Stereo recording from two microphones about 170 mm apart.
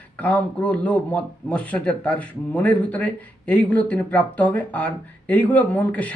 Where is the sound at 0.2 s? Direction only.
10° left (ahead or behind).